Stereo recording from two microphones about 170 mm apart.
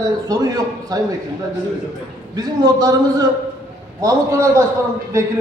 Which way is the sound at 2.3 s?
20° right (ahead or behind).